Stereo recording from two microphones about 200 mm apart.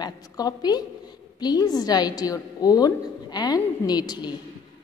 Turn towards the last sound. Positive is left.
turn(degrees=20)  # may be behind; listen again after turning